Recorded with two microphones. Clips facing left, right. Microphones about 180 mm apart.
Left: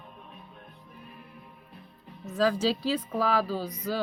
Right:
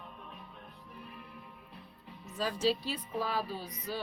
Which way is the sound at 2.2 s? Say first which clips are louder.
Left 6 dB; 90° left.